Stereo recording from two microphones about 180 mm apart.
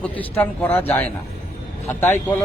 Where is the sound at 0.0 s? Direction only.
10° left (ahead or behind).